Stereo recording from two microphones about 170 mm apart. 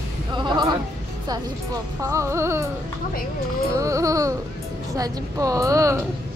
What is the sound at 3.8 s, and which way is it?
Baby cry, 20° right (ahead or behind).